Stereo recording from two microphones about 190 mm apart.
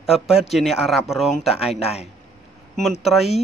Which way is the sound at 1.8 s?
30° left (ahead or behind).